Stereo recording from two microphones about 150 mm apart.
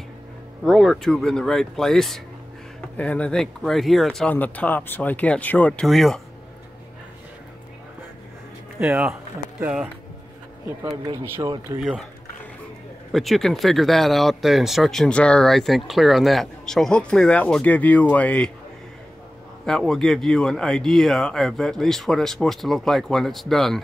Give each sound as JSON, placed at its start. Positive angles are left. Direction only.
{"t": 0.7, "sound": "speech", "side_deg": 0}
{"t": 8.7, "sound": "speech", "side_deg": -10}
{"t": 11.4, "sound": "speech", "side_deg": -30}
{"t": 11.8, "sound": "speech", "side_deg": 0}
{"t": 13.1, "sound": "speech", "side_deg": 0}
{"t": 19.6, "sound": "speech", "side_deg": 5}